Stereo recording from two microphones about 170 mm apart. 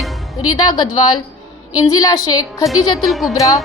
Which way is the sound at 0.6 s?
25° left (ahead or behind).